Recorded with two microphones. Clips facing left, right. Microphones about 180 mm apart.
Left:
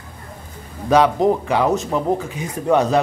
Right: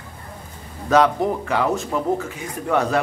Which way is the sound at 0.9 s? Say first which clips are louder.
Left 3 dB; 15° left (ahead or behind).